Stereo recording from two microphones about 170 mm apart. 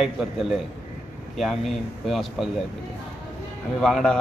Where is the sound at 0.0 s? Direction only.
Centre (ahead or behind).